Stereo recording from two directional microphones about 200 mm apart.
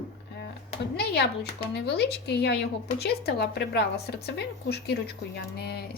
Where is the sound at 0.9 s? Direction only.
55° left (ahead or behind).